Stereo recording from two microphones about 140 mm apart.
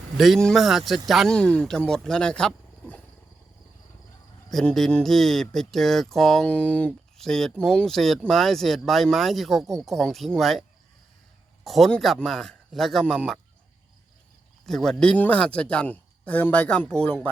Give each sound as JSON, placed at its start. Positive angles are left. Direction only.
{"t": 0.2, "sound": "speech", "side_deg": 0}
{"t": 4.5, "sound": "speech", "side_deg": 0}
{"t": 14.7, "sound": "speech", "side_deg": 5}